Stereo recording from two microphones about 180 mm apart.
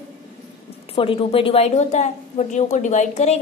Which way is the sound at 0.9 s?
30° left (ahead or behind).